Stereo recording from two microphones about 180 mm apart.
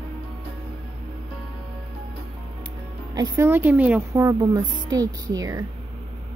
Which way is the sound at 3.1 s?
15° right (ahead or behind).